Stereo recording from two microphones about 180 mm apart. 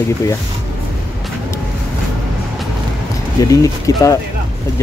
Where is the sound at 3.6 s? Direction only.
20° left (ahead or behind).